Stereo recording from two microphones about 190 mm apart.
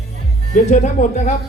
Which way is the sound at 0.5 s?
40° left (ahead or behind).